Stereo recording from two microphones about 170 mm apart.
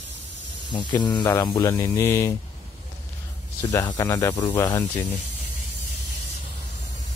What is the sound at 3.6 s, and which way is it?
Mantra, 20° left (ahead or behind).